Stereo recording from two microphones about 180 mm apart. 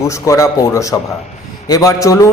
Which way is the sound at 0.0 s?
15° left (ahead or behind).